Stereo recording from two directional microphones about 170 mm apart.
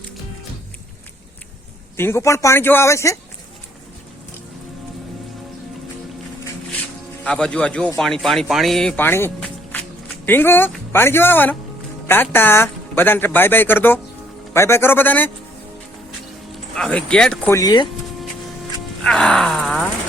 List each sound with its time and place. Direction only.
2.0 s a man's voice: 15° left (ahead or behind)
7.3 s a man's voice: 5° left (ahead or behind)
16.7 s speech: 5° left (ahead or behind)
17.5 s speech: 20° left (ahead or behind)
19.0 s groan: 5° left (ahead or behind)